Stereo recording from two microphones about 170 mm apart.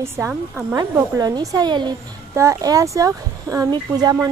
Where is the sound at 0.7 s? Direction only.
20° right (ahead or behind).